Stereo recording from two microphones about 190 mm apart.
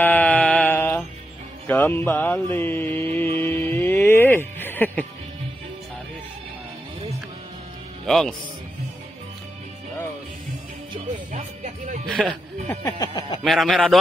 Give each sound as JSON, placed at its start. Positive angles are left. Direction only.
{"t": 0.0, "sound": "mantra", "side_deg": 10}
{"t": 1.7, "sound": "speech", "side_deg": 15}
{"t": 2.5, "sound": "mantra", "side_deg": 10}
{"t": 3.2, "sound": "music", "side_deg": 10}
{"t": 8.1, "sound": "speech", "side_deg": 0}
{"t": 10.9, "sound": "music", "side_deg": -35}
{"t": 12.2, "sound": "speech", "side_deg": 0}
{"t": 12.6, "sound": "speech", "side_deg": 15}
{"t": 13.4, "sound": "speech", "side_deg": 0}